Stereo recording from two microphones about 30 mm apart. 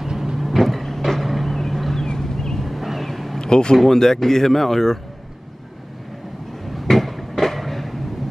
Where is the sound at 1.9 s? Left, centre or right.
Centre.